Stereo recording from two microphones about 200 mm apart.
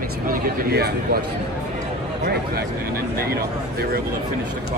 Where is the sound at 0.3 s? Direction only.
50° right (ahead or behind).